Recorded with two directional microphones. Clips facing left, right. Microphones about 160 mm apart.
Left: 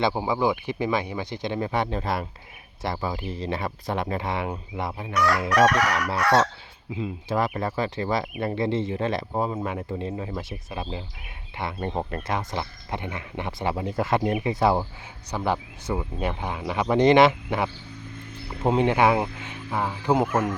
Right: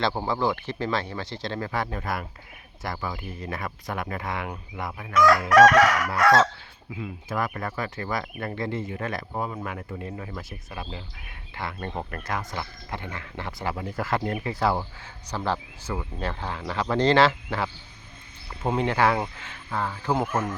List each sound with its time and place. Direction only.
0.0 s speech: 10° left (ahead or behind)
5.1 s chicken: 90° right
6.9 s speech: 25° left (ahead or behind)